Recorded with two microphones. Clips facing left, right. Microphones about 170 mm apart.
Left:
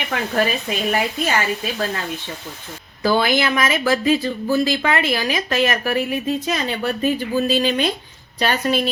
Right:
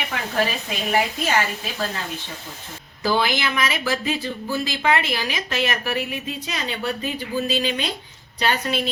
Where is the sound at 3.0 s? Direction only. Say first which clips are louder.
Left 4 dB; 50° left (ahead or behind).